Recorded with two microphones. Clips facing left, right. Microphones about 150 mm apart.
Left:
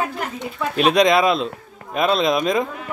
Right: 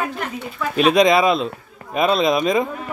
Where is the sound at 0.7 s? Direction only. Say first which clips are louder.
Right 1 dB; centre (ahead or behind).